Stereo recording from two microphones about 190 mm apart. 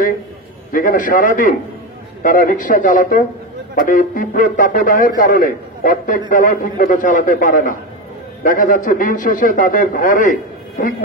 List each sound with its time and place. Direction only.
0.7 s a man's voice: 45° left (ahead or behind)